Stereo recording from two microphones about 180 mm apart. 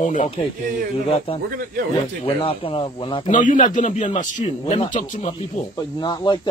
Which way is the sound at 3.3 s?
45° left (ahead or behind).